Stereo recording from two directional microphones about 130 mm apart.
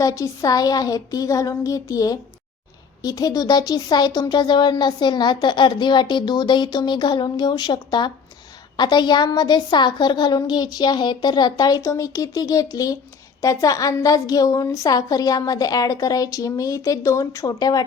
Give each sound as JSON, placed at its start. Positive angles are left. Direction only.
{"t": 0.0, "sound": "a woman's voice", "side_deg": 25}